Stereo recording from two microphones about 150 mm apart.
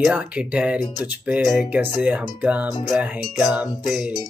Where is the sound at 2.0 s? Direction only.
10° right (ahead or behind).